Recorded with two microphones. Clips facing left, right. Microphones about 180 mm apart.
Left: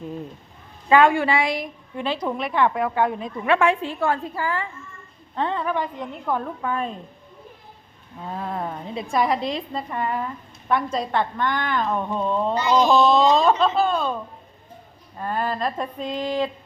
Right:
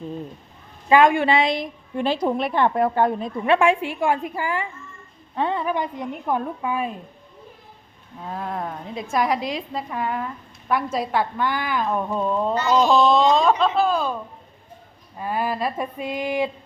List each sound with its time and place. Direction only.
0.9 s a woman's voice: 15° right (ahead or behind); by 3.5 s 35° right (ahead or behind)
3.5 s a woman's voice: 15° right (ahead or behind)
8.2 s a woman's voice: centre (ahead or behind)
12.5 s a woman's voice: 10° left (ahead or behind)
15.2 s a woman's voice: 10° right (ahead or behind)